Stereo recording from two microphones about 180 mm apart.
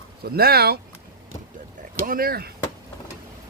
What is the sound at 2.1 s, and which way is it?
Speech, 55° right (ahead or behind).